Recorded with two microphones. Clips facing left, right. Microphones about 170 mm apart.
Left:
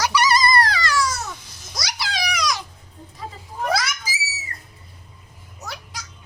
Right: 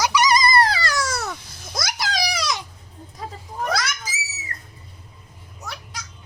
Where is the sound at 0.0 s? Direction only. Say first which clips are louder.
Right 1 dB; 10° right (ahead or behind).